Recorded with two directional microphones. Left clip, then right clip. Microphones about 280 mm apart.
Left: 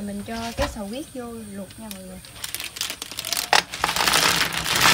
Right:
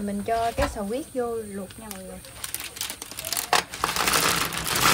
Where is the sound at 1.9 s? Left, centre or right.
Centre.